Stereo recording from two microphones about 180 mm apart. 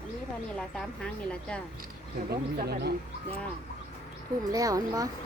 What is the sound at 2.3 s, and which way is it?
Speech, 65° right (ahead or behind).